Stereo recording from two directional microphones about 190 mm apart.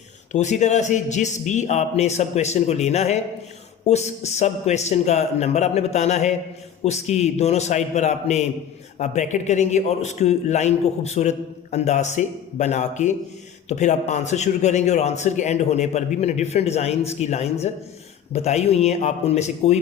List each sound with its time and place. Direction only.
0.3 s a man's voice: 40° left (ahead or behind)